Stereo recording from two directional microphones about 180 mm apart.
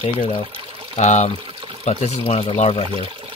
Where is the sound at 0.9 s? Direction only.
40° left (ahead or behind).